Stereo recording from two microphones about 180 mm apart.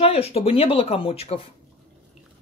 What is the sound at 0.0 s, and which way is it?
Speech, 35° left (ahead or behind).